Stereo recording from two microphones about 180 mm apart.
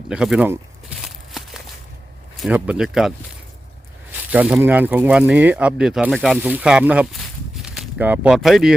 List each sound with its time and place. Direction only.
0.1 s a sound: 5° right (ahead or behind)
2.4 s speech: 5° right (ahead or behind)
4.1 s speech: 10° right (ahead or behind)